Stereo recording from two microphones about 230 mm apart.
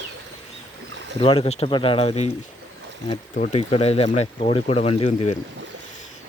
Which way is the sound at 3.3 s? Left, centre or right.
Left.